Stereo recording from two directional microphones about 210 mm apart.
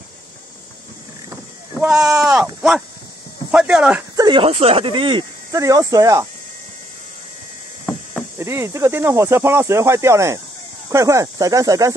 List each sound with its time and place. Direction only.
1.3 s sheep: 10° right (ahead or behind)
3.5 s speech: 5° right (ahead or behind)
4.2 s speech: 25° right (ahead or behind)
8.4 s speech: 10° right (ahead or behind)